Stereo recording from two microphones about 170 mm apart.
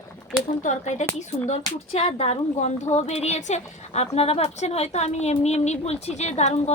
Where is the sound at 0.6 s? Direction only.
45° left (ahead or behind).